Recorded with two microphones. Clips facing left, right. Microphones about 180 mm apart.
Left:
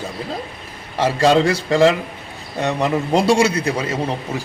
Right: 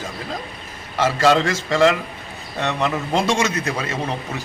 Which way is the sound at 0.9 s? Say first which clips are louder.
Left 2 dB; 35° left (ahead or behind).